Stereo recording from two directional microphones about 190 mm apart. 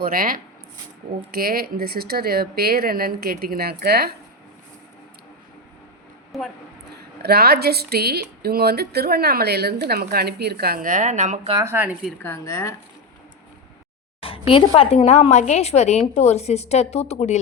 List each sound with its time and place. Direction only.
0.0 s speech: 50° right (ahead or behind)
6.3 s speech: centre (ahead or behind)
6.9 s a woman's voice: 55° right (ahead or behind); by 11.5 s 40° right (ahead or behind)
11.5 s speech: 15° right (ahead or behind)
12.0 s speech: 10° left (ahead or behind)
14.2 s a woman's voice: 30° left (ahead or behind)